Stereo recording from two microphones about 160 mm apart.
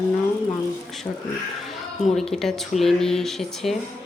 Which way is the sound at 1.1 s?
10° left (ahead or behind).